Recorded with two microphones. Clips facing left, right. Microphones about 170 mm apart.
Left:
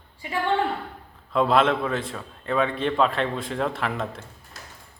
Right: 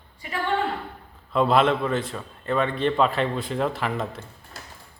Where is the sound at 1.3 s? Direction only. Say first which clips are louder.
Even; centre (ahead or behind).